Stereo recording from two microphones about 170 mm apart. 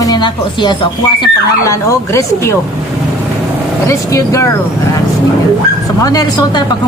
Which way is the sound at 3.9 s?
20° left (ahead or behind).